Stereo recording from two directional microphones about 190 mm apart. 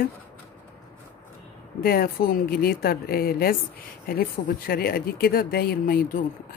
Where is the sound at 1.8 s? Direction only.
50° left (ahead or behind).